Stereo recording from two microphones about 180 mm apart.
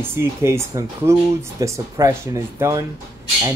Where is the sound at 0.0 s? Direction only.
15° right (ahead or behind).